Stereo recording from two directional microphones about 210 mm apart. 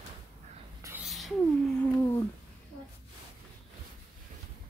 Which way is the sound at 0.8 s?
15° right (ahead or behind).